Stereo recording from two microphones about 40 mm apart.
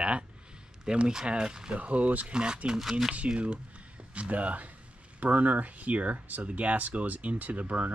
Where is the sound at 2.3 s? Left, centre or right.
Right.